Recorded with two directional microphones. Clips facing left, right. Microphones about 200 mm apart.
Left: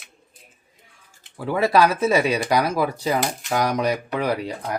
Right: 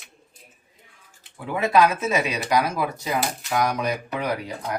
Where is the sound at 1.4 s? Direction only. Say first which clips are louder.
Left 1 dB; 35° left (ahead or behind).